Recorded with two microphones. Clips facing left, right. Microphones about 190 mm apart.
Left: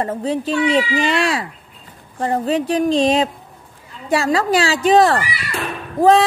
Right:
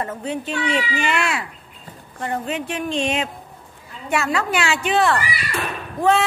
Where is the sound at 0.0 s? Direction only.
35° left (ahead or behind).